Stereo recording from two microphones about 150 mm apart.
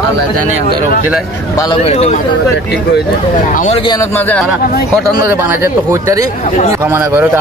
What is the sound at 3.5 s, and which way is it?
Speech, 60° left (ahead or behind).